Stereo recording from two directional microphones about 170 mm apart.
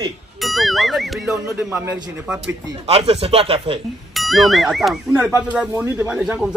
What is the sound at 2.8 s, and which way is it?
Speech, 35° right (ahead or behind).